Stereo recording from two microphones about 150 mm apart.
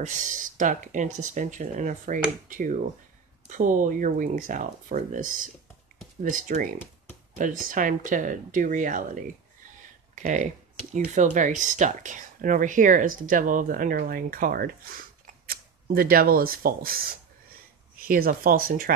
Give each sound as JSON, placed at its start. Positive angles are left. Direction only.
{"t": 0.0, "sound": "speech", "side_deg": -60}